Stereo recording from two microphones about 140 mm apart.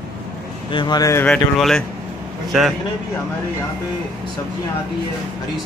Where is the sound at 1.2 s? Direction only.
5° left (ahead or behind).